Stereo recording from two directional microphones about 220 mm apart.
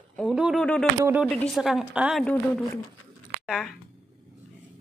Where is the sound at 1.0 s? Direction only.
10° right (ahead or behind).